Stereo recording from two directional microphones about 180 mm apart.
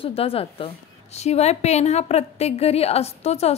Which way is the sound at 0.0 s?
30° left (ahead or behind).